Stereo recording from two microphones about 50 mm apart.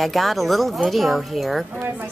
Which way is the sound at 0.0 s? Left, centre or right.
Centre.